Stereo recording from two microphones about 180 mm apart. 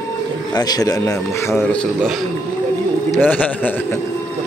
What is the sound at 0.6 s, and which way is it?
Speech, 20° left (ahead or behind).